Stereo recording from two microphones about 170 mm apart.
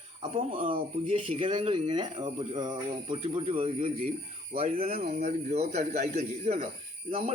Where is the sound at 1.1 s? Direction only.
30° right (ahead or behind).